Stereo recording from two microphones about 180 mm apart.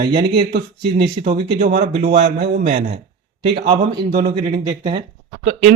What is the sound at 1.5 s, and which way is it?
Speech, 45° right (ahead or behind).